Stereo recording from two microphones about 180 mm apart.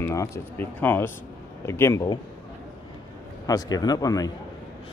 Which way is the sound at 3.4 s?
20° left (ahead or behind).